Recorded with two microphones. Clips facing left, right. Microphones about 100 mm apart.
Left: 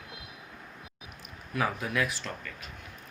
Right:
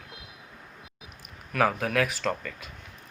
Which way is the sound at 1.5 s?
70° right (ahead or behind).